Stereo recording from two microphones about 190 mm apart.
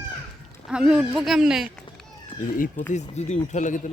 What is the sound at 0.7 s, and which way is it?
Speech, 5° right (ahead or behind).